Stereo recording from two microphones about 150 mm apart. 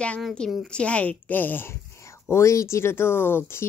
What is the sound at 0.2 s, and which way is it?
Speech, 5° left (ahead or behind).